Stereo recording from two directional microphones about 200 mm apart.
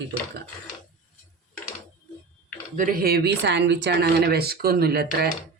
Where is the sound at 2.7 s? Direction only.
45° right (ahead or behind).